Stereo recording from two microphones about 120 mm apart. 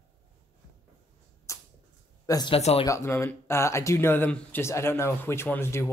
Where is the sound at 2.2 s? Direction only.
30° left (ahead or behind).